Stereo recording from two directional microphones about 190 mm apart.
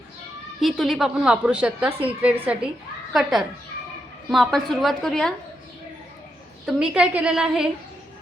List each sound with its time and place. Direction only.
0.6 s a woman's voice: centre (ahead or behind)
6.7 s a woman's voice: 5° right (ahead or behind)